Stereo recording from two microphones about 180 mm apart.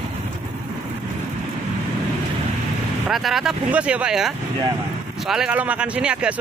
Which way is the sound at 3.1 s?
Centre (ahead or behind).